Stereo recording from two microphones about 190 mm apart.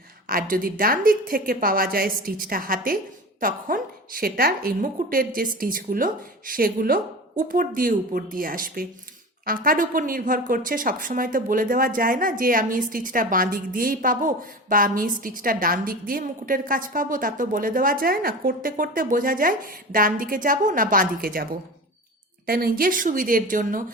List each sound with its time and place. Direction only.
0.3 s a woman's voice: 50° right (ahead or behind)
22.4 s a woman's voice: 50° right (ahead or behind)